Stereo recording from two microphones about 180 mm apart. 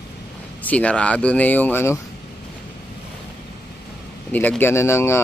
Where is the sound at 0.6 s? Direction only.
5° left (ahead or behind).